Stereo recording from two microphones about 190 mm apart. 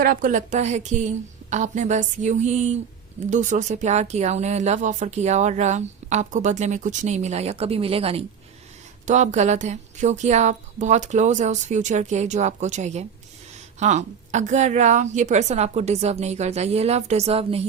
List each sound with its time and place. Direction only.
0.0 s speech: 45° right (ahead or behind); by 17.6 s 30° right (ahead or behind)